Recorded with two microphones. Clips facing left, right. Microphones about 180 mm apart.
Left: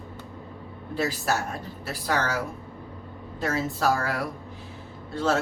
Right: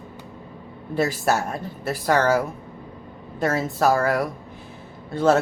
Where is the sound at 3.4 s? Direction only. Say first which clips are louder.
Right 5 dB; 55° right (ahead or behind).